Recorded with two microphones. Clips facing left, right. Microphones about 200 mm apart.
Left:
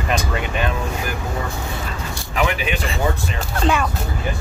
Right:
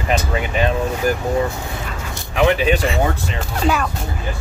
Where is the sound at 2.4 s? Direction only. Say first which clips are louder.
Right 7 dB; 35° right (ahead or behind).